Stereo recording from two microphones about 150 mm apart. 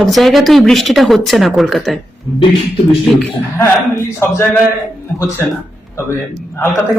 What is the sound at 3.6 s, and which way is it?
A man's voice, 20° left (ahead or behind).